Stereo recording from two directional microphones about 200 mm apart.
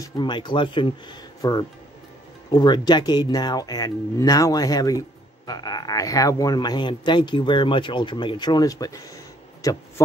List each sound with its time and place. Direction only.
0.0 s speech: 20° left (ahead or behind)